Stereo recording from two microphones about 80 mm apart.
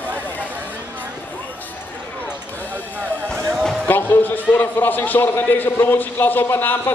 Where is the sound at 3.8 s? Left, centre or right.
Left.